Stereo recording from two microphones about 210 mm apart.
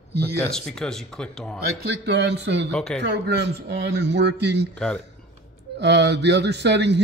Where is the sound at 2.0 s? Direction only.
55° right (ahead or behind).